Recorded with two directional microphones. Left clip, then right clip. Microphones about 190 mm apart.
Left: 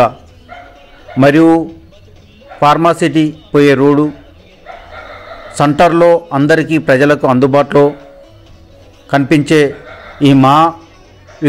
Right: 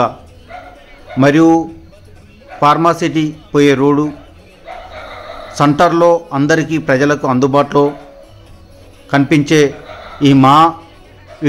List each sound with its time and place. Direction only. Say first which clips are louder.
1.1 s a man's voice: left 2 dB; 15° left (ahead or behind)
2.6 s a man's voice: left 2 dB; 20° left (ahead or behind)
5.6 s a man's voice: left 2 dB; 15° left (ahead or behind)
9.1 s a man's voice: left 1 dB; 15° left (ahead or behind)